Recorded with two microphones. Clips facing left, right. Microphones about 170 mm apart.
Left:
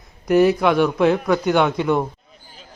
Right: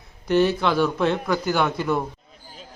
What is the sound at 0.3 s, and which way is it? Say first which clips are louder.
Speech: left 4 dB; centre (ahead or behind).